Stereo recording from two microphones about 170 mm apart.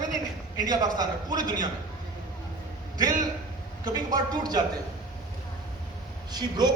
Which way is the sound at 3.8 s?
25° right (ahead or behind).